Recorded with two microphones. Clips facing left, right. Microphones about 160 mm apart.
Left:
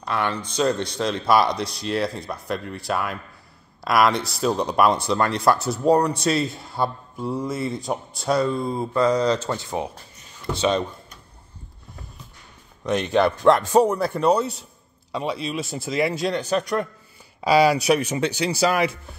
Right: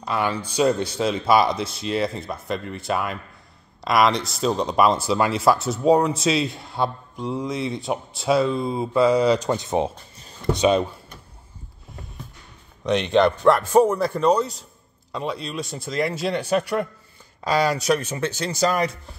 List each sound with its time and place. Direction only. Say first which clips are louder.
0.0 s speech: right 1 dB; 5° right (ahead or behind); by 10.5 s 30° right (ahead or behind)
10.5 s speech: right 3 dB; 15° right (ahead or behind)
12.8 s speech: right 2 dB; 5° left (ahead or behind)
13.5 s speech: left 2 dB; 15° left (ahead or behind)
13.9 s speech: even; 5° left (ahead or behind)
17.4 s speech: left 4 dB; 10° left (ahead or behind)